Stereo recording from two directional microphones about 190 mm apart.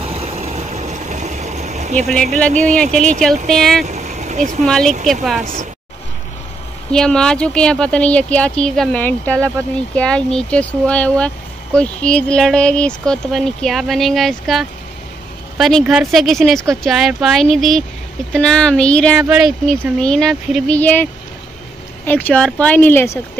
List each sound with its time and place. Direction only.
0.0 s vehicle: 30° right (ahead or behind)
2.7 s speech: 5° left (ahead or behind)
3.8 s vehicle: 40° right (ahead or behind)
4.6 s speech: 5° left (ahead or behind)
5.4 s speech: 40° right (ahead or behind)
6.9 s speech: 5° left (ahead or behind)